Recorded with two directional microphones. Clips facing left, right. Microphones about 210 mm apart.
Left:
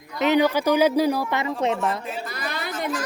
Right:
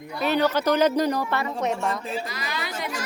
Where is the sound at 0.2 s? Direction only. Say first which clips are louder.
Left 3 dB; 15° left (ahead or behind).